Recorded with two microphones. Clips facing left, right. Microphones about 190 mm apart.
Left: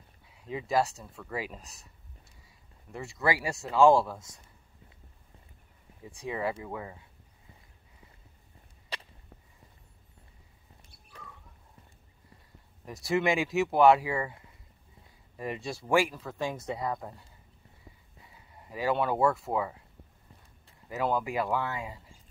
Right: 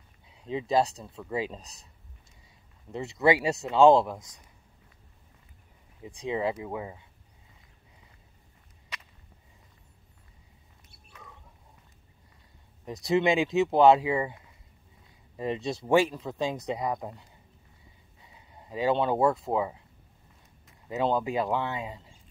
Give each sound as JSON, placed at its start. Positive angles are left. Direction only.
{"t": 0.3, "sound": "speech", "side_deg": -25}
{"t": 2.9, "sound": "speech", "side_deg": -20}
{"t": 6.0, "sound": "speech", "side_deg": -20}
{"t": 8.9, "sound": "whip", "side_deg": 30}
{"t": 11.1, "sound": "a sound", "side_deg": 35}
{"t": 12.8, "sound": "speech", "side_deg": -20}
{"t": 18.3, "sound": "speech", "side_deg": -20}
{"t": 20.9, "sound": "speech", "side_deg": -25}